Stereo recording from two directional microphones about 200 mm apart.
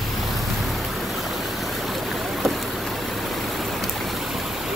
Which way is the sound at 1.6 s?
Centre (ahead or behind).